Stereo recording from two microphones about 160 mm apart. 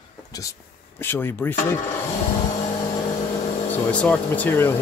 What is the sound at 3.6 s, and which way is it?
Speech, 10° left (ahead or behind).